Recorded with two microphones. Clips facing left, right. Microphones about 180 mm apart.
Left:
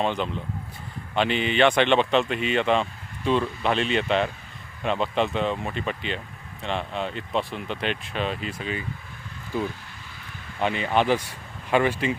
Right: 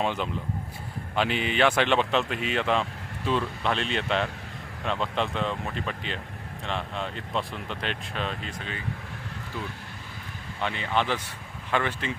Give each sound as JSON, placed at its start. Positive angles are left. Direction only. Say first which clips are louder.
{"t": 0.0, "sound": "speech", "louder": "left 2 dB", "side_deg": -5}
{"t": 10.6, "sound": "speech", "louder": "left 5 dB", "side_deg": 15}